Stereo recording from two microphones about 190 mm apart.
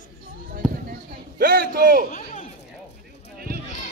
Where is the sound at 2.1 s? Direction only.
40° left (ahead or behind).